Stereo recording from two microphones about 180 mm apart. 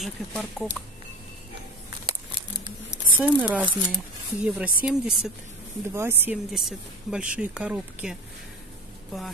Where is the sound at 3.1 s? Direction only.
10° right (ahead or behind).